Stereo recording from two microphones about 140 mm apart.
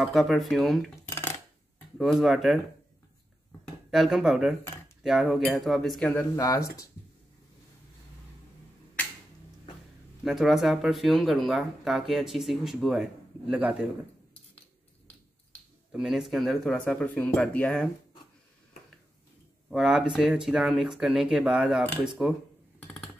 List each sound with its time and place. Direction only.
0.0 s speech: centre (ahead or behind)
1.0 s dishes: 20° left (ahead or behind)
2.0 s speech: centre (ahead or behind)
3.9 s speech: 5° right (ahead or behind)
6.3 s speech: 25° left (ahead or behind)
10.2 s speech: centre (ahead or behind)
15.9 s speech: 5° right (ahead or behind)
19.7 s speech: 5° right (ahead or behind)